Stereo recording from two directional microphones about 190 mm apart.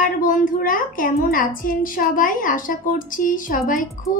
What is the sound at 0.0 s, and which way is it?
A woman's voice, 45° left (ahead or behind).